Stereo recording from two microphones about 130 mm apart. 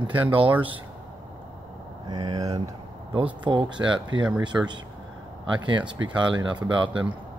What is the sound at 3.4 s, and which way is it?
Speech, 35° right (ahead or behind).